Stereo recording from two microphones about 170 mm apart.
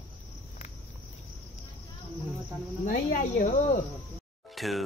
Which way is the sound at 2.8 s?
55° left (ahead or behind).